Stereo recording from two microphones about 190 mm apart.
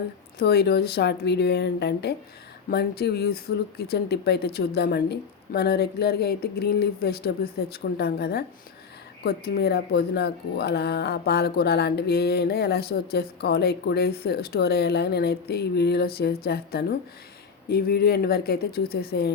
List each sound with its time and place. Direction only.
0.3 s speech: 55° left (ahead or behind)